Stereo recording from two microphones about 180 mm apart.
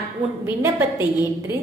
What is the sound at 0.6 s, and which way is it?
Speech, 15° right (ahead or behind).